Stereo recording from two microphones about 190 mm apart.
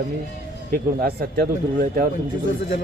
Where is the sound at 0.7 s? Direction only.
50° right (ahead or behind).